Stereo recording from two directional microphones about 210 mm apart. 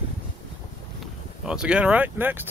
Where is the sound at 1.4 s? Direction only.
5° right (ahead or behind).